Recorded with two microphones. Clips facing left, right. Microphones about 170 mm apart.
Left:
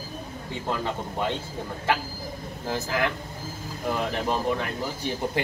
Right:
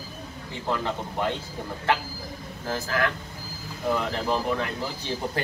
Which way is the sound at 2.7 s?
20° left (ahead or behind).